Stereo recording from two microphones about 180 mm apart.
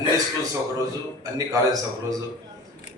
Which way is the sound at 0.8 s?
20° right (ahead or behind).